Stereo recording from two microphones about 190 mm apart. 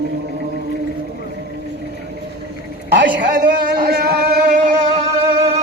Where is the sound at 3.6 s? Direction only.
60° right (ahead or behind).